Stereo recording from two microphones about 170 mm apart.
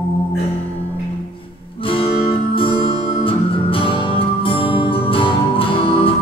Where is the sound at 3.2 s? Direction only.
30° left (ahead or behind).